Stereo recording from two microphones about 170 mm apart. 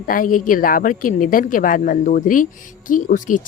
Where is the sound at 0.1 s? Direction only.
50° left (ahead or behind).